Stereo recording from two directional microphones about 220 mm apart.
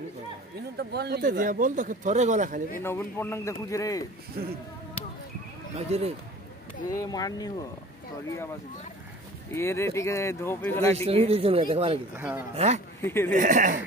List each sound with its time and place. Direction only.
0.7 s speech: 50° right (ahead or behind)
2.8 s speech: 10° left (ahead or behind)
4.4 s speech: 40° right (ahead or behind)
5.8 s speech: 30° right (ahead or behind)
6.9 s speech: 15° left (ahead or behind)
9.5 s speech: 10° left (ahead or behind)
11.1 s speech: 25° right (ahead or behind)
12.2 s speech: 5° right (ahead or behind)
12.5 s speech: 30° right (ahead or behind)
13.0 s speech: 10° left (ahead or behind)
13.3 s speech: 35° right (ahead or behind)